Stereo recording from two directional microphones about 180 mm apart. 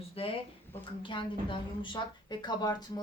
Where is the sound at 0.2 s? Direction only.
30° left (ahead or behind).